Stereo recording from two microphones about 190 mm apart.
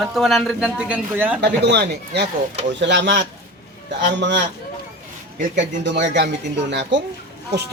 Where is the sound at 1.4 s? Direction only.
60° right (ahead or behind).